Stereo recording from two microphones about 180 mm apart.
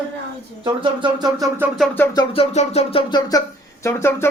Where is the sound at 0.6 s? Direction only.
25° right (ahead or behind).